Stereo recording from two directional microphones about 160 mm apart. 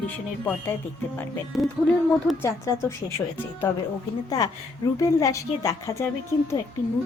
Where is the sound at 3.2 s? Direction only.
15° left (ahead or behind).